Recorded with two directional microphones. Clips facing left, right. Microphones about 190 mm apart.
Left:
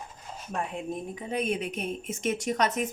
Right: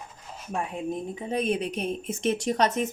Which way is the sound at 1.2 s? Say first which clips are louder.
Right 2 dB; 30° right (ahead or behind).